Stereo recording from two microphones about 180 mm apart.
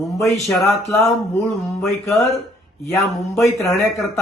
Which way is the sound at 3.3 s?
15° left (ahead or behind).